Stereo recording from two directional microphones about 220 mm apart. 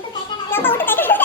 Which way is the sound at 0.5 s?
10° left (ahead or behind).